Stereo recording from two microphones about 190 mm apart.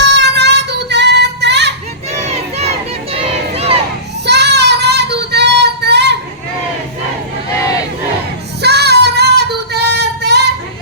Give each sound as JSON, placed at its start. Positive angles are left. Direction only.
{"t": 0.0, "sound": "child singing", "side_deg": -65}
{"t": 2.2, "sound": "crowd", "side_deg": -35}
{"t": 4.3, "sound": "child singing", "side_deg": -65}
{"t": 8.6, "sound": "child singing", "side_deg": -60}